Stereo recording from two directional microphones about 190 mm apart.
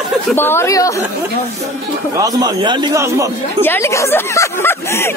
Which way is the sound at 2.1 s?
20° right (ahead or behind).